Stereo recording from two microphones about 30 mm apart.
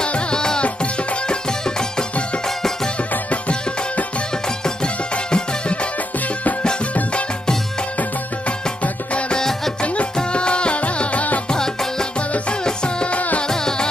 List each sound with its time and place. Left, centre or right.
0.0 s music: left
3.3 s music: left
4.8 s music: left
10.3 s music: left
10.8 s music: left
12.6 s music: left
13.5 s music: left